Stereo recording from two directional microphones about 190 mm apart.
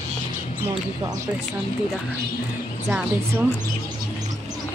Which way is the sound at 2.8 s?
Centre (ahead or behind).